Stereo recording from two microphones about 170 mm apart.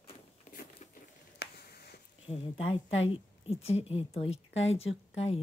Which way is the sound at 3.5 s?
35° left (ahead or behind).